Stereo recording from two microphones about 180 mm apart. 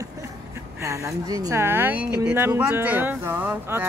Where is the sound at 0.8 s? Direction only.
15° right (ahead or behind).